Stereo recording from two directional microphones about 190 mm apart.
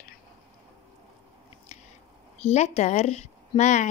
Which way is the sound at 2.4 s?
35° left (ahead or behind).